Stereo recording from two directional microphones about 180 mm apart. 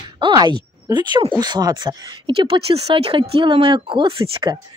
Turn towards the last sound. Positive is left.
turn(degrees=-30)  # may be behind; listen again after turning